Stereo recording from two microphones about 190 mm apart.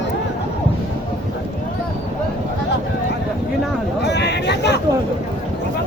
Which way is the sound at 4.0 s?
65° left (ahead or behind).